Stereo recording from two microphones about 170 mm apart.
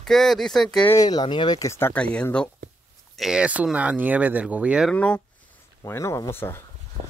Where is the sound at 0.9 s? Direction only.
25° left (ahead or behind); by 2.5 s 5° left (ahead or behind).